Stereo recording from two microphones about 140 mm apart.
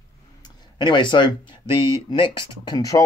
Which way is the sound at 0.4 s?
35° left (ahead or behind).